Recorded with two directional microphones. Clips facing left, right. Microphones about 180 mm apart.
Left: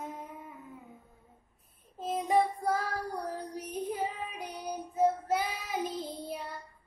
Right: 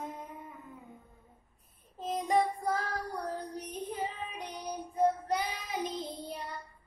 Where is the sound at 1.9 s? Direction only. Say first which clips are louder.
Left 1 dB; 5° left (ahead or behind).